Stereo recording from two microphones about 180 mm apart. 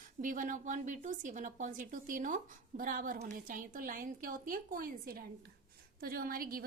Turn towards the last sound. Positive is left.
turn(degrees=-55)  # may be behind; listen again after turning